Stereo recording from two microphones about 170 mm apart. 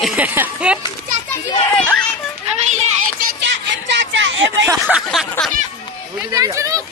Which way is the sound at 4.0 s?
90° right.